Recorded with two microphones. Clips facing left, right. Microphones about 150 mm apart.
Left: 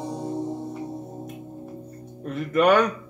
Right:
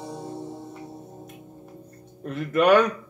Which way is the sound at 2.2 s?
Centre (ahead or behind).